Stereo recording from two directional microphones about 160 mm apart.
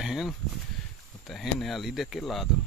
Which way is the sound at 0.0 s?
Centre (ahead or behind).